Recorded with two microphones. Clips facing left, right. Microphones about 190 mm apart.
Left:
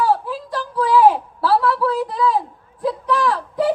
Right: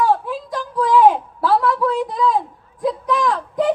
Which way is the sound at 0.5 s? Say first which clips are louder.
Even; 5° left (ahead or behind).